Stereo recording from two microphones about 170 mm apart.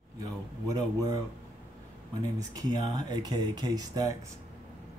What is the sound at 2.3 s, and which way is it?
Speech, 20° right (ahead or behind).